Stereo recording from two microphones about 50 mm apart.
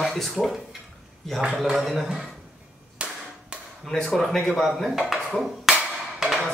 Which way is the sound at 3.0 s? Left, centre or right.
Right.